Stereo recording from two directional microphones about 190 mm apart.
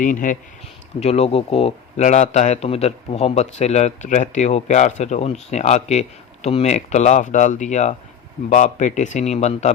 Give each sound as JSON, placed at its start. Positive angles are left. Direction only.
{"t": 0.0, "sound": "a man's voice", "side_deg": 45}